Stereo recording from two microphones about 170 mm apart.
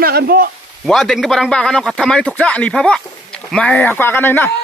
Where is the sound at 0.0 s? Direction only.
65° right (ahead or behind).